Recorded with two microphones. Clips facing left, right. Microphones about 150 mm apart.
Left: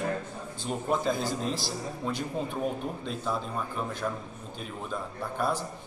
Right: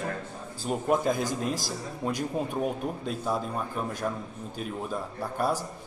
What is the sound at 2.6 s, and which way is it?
Speech, 5° right (ahead or behind).